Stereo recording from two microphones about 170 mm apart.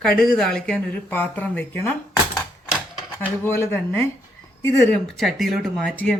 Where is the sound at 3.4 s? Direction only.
15° left (ahead or behind).